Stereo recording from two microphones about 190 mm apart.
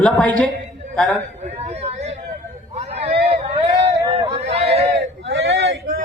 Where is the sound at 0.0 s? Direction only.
5° left (ahead or behind).